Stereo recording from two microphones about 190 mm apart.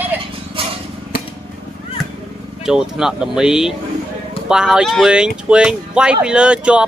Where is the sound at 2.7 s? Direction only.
5° right (ahead or behind).